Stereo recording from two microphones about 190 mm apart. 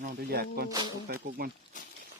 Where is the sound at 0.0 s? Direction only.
50° right (ahead or behind).